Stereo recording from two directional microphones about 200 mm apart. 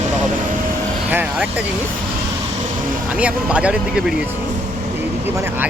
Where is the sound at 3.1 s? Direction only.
5° right (ahead or behind).